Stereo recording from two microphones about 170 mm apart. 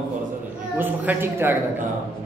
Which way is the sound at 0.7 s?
10° right (ahead or behind).